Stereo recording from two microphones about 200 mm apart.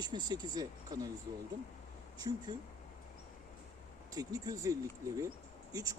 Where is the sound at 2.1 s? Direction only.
20° right (ahead or behind).